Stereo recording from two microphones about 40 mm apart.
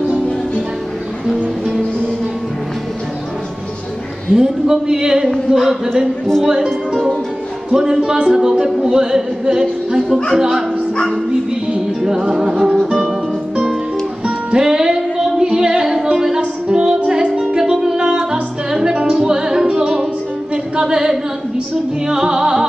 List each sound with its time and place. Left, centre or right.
4.4 s speech: centre
12.0 s speech: centre
12.6 s music: centre
14.2 s music: right
17.6 s music: centre
20.7 s singing: centre
22.0 s speech: centre